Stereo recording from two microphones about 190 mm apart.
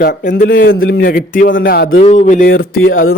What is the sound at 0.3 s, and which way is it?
Speech, 50° left (ahead or behind).